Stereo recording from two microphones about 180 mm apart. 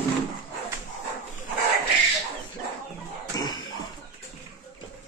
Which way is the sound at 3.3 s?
20° left (ahead or behind).